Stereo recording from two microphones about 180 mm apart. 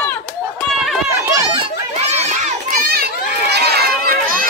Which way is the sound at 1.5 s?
35° right (ahead or behind).